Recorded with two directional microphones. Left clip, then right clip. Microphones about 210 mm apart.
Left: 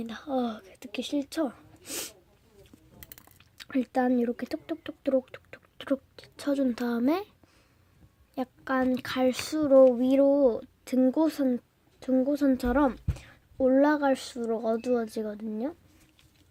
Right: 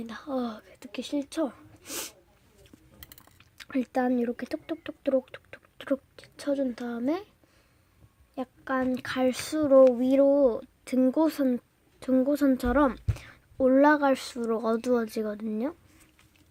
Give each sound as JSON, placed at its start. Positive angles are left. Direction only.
{"t": 0.0, "sound": "speech", "side_deg": 5}
{"t": 3.3, "sound": "speech", "side_deg": 0}
{"t": 6.5, "sound": "speech", "side_deg": 20}
{"t": 8.4, "sound": "speech", "side_deg": 10}